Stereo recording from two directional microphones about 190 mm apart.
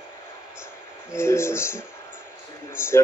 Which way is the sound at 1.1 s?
15° left (ahead or behind).